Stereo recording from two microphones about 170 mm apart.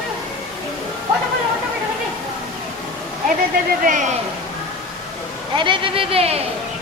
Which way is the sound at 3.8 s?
50° right (ahead or behind).